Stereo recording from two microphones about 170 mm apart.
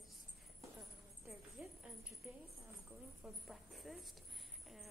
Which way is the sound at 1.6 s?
5° right (ahead or behind).